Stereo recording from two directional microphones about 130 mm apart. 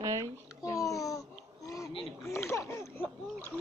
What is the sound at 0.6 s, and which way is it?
Babbling, 25° left (ahead or behind).